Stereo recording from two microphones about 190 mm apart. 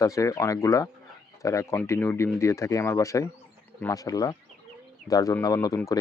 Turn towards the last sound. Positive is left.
turn(degrees=20)  # may be behind; listen again after turning